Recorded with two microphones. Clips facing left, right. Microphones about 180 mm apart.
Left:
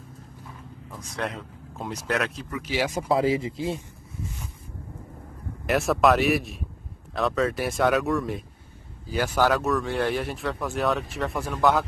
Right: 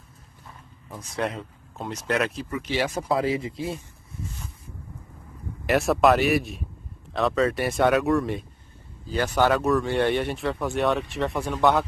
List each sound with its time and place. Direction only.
0.9 s speech: centre (ahead or behind)
3.1 s speech: 25° left (ahead or behind)
5.7 s speech: centre (ahead or behind)